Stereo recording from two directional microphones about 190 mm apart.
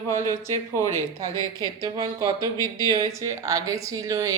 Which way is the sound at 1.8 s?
20° right (ahead or behind).